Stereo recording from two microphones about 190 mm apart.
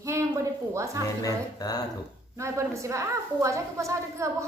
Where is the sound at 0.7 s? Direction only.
15° right (ahead or behind).